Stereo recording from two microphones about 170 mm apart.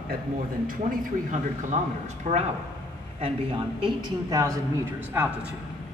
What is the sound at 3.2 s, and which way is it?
A woman's voice, 30° right (ahead or behind).